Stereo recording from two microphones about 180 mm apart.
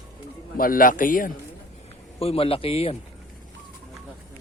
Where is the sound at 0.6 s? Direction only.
50° left (ahead or behind).